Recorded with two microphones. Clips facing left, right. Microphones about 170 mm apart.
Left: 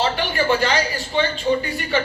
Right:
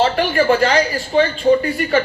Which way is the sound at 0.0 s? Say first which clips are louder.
Right 6 dB; 40° right (ahead or behind).